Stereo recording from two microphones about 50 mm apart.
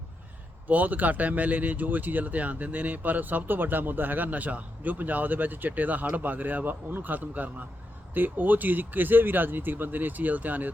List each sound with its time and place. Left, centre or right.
0.7 s speech: right